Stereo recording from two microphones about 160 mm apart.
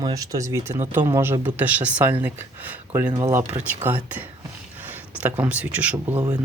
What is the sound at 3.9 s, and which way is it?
Speech, 10° right (ahead or behind).